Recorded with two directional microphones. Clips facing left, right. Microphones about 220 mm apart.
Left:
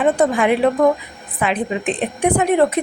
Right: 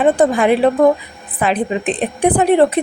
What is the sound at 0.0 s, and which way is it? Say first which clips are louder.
A woman's voice: right 3 dB; 35° right (ahead or behind).